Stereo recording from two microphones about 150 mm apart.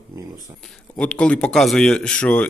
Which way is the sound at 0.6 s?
5° left (ahead or behind).